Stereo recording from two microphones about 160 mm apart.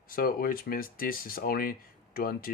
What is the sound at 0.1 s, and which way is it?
Speech, 65° left (ahead or behind).